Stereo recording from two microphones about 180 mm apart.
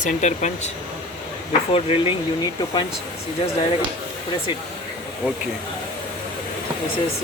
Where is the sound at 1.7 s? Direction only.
30° left (ahead or behind).